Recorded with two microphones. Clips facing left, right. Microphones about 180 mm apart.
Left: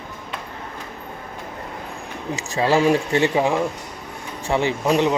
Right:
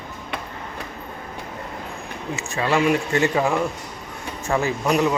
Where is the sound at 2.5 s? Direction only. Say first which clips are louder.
Left 3 dB; 30° left (ahead or behind).